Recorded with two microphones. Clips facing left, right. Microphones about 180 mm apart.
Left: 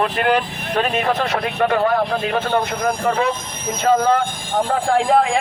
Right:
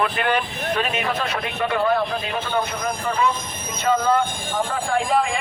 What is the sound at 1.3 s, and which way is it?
Speech, 55° left (ahead or behind).